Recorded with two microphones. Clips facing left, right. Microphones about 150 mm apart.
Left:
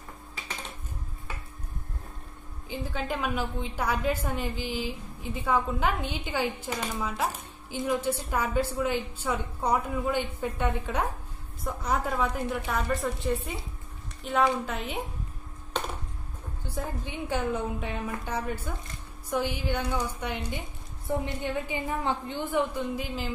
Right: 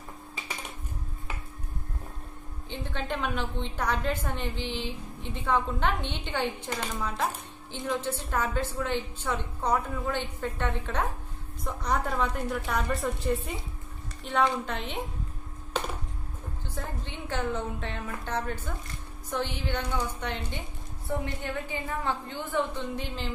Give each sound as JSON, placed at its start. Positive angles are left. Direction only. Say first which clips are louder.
{"t": 2.7, "sound": "a woman's voice", "louder": "left 1 dB", "side_deg": 5}
{"t": 16.6, "sound": "a woman's voice", "louder": "left 4 dB", "side_deg": 10}